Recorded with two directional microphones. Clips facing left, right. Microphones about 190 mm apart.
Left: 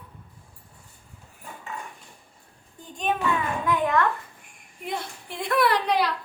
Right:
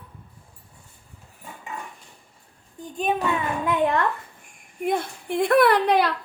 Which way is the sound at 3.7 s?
30° right (ahead or behind).